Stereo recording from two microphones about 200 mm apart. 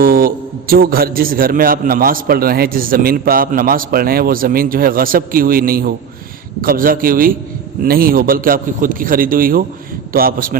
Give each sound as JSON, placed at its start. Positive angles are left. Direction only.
{"t": 0.0, "sound": "a man's voice", "side_deg": -45}